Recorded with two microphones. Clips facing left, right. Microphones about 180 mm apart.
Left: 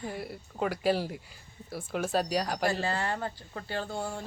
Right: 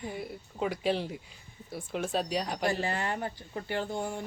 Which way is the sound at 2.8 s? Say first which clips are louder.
Left 1 dB; 20° right (ahead or behind).